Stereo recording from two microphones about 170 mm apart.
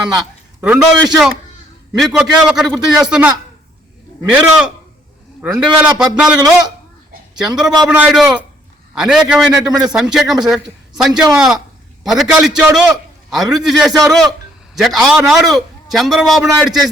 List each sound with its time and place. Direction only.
0.0 s a man's voice: 5° right (ahead or behind)
5.4 s a man's voice: 5° right (ahead or behind)
9.6 s a man's voice: 25° right (ahead or behind)
9.9 s a man's voice: 5° right (ahead or behind)